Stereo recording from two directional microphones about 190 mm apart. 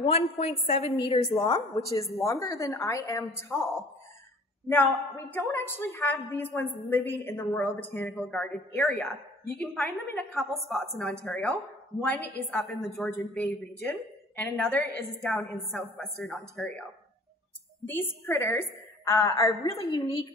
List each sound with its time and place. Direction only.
0.0 s a woman's voice: 30° left (ahead or behind); by 16.8 s 5° left (ahead or behind)
17.8 s a woman's voice: 10° left (ahead or behind)